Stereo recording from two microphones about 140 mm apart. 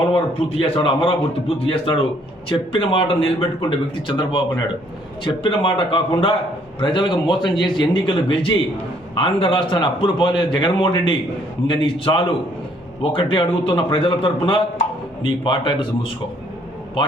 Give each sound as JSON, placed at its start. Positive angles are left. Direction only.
{"t": 0.6, "sound": "a man's voice", "side_deg": 40}